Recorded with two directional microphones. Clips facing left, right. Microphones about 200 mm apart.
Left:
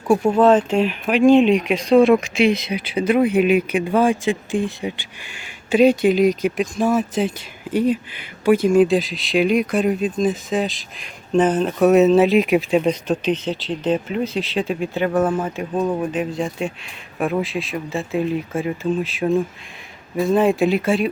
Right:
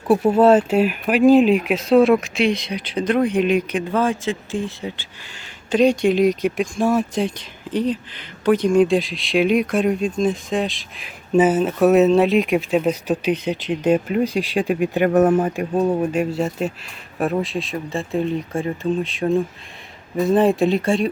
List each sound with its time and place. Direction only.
0.1 s speech: 5° right (ahead or behind)
15.0 s speech: 40° right (ahead or behind)
15.5 s speech: 10° right (ahead or behind)